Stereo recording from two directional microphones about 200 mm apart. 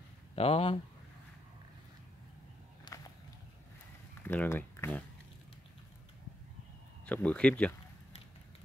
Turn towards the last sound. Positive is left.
turn(degrees=5)  # may be behind; listen again after turning